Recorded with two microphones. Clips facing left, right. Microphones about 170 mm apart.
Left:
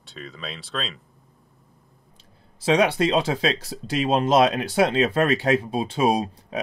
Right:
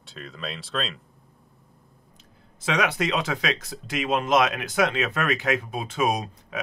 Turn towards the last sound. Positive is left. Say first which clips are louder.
# left 5 dB
turn(degrees=30)  # may be behind; listen again after turning